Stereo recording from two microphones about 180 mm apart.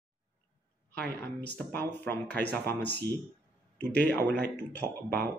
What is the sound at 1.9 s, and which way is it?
Speech, 70° right (ahead or behind).